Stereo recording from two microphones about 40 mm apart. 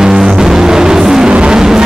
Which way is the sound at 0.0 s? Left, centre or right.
Centre.